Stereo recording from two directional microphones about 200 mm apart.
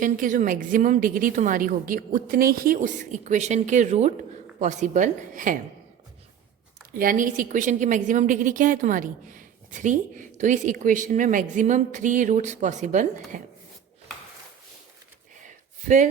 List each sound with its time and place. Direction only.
0.0 s a woman's voice: 40° right (ahead or behind)
7.0 s a woman's voice: 45° right (ahead or behind)
15.4 s a sound: 35° right (ahead or behind)